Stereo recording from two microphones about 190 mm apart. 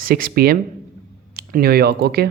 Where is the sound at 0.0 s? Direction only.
50° right (ahead or behind).